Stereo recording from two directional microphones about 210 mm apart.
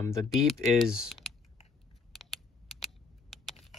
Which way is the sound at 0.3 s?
Centre (ahead or behind).